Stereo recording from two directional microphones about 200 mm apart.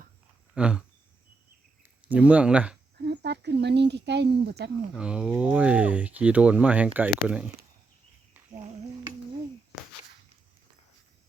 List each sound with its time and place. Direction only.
0.5 s a sound: 5° right (ahead or behind)
1.8 s speech: 10° right (ahead or behind)
3.0 s speech: 55° right (ahead or behind)
4.9 s speech: 5° right (ahead or behind)